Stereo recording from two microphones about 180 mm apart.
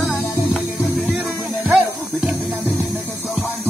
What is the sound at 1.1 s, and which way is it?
Music, 10° right (ahead or behind).